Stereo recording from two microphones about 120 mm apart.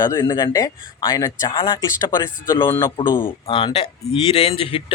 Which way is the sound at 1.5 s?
45° left (ahead or behind).